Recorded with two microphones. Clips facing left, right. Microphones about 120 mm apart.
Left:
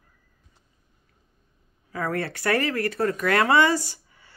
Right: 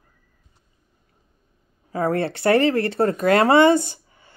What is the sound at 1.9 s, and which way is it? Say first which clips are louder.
Speech: right 6 dB; 30° right (ahead or behind).